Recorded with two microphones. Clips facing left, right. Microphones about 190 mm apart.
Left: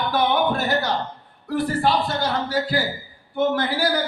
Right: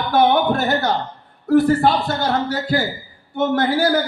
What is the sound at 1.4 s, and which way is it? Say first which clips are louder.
A man's voice: right 7 dB; 50° right (ahead or behind).